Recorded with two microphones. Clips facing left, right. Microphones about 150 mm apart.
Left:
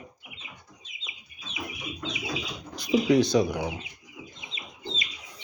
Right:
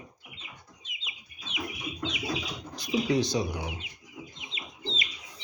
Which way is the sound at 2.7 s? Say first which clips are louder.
Left 5 dB; 65° left (ahead or behind).